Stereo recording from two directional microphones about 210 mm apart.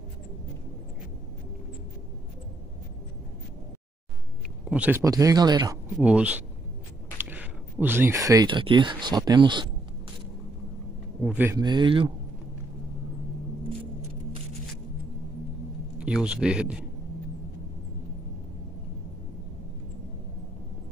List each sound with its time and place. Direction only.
4.6 s speech: 5° right (ahead or behind)
5.9 s speech: 5° right (ahead or behind); by 9.7 s 20° right (ahead or behind)
11.2 s speech: 10° right (ahead or behind)
11.6 s speech: 20° right (ahead or behind)
16.0 s speech: 5° right (ahead or behind)